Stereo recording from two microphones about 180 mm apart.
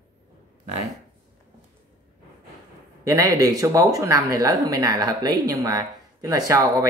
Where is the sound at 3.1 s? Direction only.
20° right (ahead or behind).